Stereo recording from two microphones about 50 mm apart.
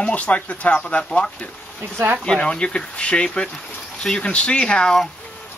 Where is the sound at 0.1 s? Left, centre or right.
Left.